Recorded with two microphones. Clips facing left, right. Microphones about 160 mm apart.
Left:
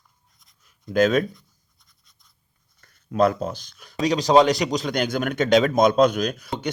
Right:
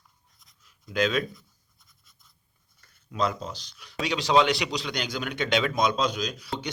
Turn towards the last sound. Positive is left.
turn(degrees=55)  # may be behind; listen again after turning